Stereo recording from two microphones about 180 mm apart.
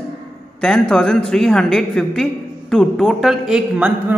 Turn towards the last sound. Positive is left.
turn(degrees=-5)  # may be behind; listen again after turning